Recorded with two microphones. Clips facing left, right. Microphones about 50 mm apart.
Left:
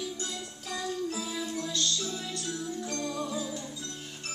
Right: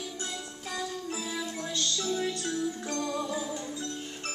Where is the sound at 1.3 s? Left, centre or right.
Right.